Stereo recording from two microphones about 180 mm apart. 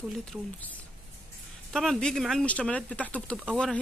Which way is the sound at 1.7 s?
Centre (ahead or behind).